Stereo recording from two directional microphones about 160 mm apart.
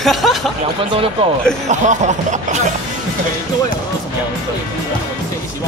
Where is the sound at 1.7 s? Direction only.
50° right (ahead or behind).